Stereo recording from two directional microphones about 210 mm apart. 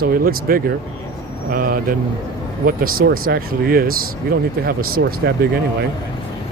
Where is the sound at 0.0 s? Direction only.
45° right (ahead or behind).